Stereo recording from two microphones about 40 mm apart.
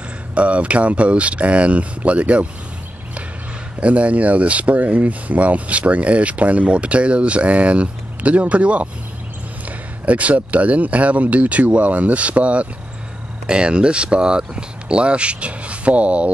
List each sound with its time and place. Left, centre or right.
0.3 s speech: right
3.8 s speech: right